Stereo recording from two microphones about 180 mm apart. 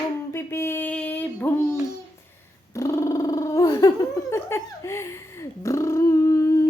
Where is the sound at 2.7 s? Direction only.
15° left (ahead or behind).